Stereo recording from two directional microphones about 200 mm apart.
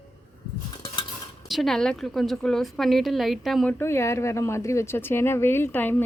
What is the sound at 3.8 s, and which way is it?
Speech, 15° left (ahead or behind).